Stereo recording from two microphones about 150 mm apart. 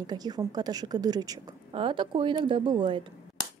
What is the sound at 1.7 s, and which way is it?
A woman's voice, 35° right (ahead or behind).